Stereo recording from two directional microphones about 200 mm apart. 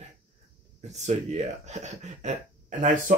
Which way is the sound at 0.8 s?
35° right (ahead or behind).